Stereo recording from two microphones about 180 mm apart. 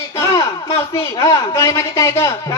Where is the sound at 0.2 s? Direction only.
20° left (ahead or behind).